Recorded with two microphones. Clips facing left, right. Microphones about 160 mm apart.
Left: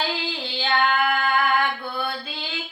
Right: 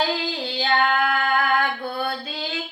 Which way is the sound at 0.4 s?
40° right (ahead or behind).